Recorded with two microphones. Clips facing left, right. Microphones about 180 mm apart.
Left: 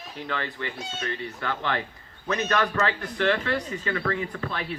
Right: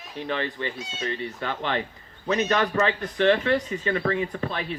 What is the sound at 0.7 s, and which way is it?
Speech, 60° left (ahead or behind).